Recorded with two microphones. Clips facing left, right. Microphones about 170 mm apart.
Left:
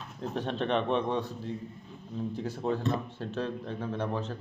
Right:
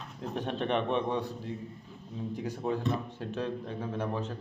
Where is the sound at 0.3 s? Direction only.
15° right (ahead or behind).